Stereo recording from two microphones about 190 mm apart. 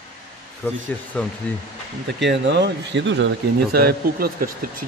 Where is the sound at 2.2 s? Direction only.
65° right (ahead or behind); by 4.8 s 50° right (ahead or behind).